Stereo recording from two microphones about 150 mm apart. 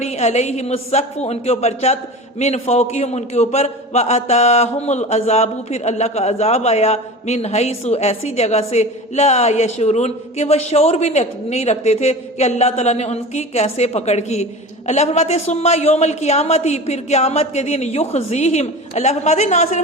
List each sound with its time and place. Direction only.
0.0 s a man's voice: 45° left (ahead or behind)